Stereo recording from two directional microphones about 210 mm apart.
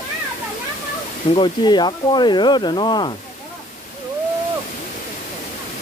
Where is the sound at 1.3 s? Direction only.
20° left (ahead or behind).